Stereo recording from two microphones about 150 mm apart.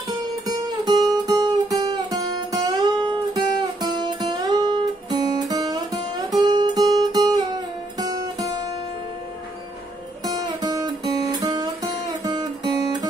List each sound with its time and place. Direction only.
0.5 s music: 25° right (ahead or behind)
10.2 s guitar: 25° right (ahead or behind)